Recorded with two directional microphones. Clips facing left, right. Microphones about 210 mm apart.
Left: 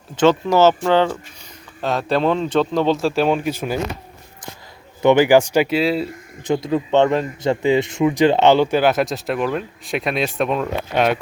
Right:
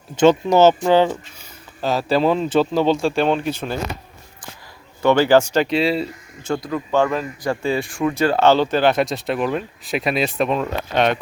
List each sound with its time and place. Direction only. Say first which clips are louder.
0.2 s a man's voice: right 1 dB; 15° right (ahead or behind); by 3.8 s 10° left (ahead or behind)
5.0 s a man's voice: left 2 dB; 15° left (ahead or behind)
6.4 s a man's voice: left 4 dB; 20° left (ahead or behind)